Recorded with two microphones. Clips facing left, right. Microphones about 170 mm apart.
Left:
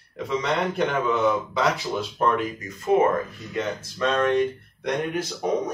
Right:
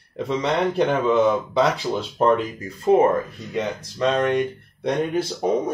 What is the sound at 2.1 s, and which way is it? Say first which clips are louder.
Speech: right 5 dB; 30° right (ahead or behind).